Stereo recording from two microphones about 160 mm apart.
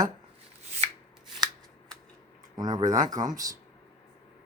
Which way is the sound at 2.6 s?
25° right (ahead or behind).